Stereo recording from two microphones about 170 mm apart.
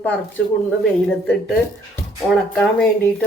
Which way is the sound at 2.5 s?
5° left (ahead or behind).